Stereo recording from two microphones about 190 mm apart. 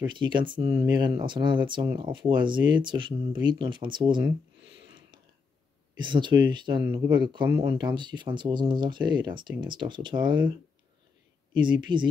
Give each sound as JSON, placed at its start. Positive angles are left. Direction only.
{"t": 0.1, "sound": "speech", "side_deg": -25}
{"t": 4.6, "sound": "a sound", "side_deg": -25}
{"t": 5.9, "sound": "speech", "side_deg": -25}
{"t": 11.5, "sound": "speech", "side_deg": -25}